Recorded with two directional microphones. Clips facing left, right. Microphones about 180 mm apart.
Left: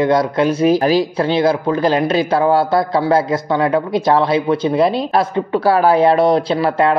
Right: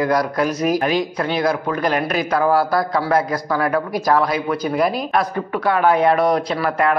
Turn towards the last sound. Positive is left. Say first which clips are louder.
# left 4 dB
turn(degrees=30)  # may be behind; listen again after turning